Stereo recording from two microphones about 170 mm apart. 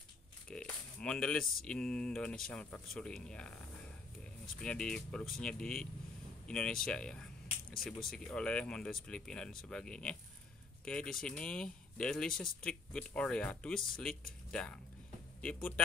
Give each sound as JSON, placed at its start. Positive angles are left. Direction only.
{"t": 0.5, "sound": "a sound", "side_deg": 5}
{"t": 1.4, "sound": "speech", "side_deg": 60}
{"t": 1.7, "sound": "speech", "side_deg": 5}
{"t": 4.6, "sound": "speech", "side_deg": 5}